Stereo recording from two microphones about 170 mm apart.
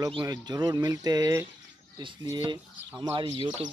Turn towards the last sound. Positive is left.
turn(degrees=-25)  # may be behind; listen again after turning